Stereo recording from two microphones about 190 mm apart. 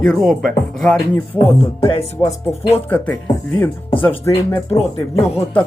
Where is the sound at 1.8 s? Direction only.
25° left (ahead or behind).